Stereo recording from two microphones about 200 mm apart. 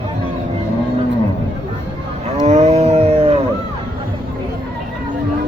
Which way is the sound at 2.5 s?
35° right (ahead or behind).